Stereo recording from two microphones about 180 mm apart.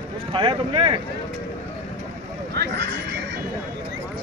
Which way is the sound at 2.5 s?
70° right (ahead or behind).